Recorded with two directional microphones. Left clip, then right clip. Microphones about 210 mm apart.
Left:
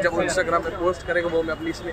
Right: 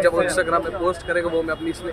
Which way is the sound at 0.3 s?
Centre (ahead or behind).